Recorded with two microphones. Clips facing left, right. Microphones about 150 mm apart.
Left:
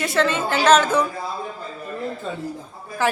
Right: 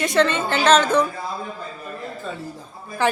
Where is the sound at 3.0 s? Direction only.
5° left (ahead or behind).